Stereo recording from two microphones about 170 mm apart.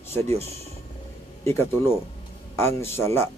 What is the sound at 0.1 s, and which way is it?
A man's voice, 15° left (ahead or behind).